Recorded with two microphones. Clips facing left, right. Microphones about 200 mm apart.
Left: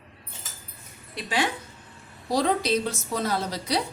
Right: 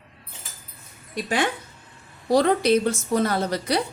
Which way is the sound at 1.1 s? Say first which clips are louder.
Right 3 dB; 50° right (ahead or behind).